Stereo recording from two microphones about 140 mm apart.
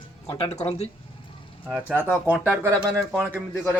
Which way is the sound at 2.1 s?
10° right (ahead or behind).